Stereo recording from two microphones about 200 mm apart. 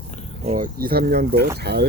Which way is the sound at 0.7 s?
50° right (ahead or behind).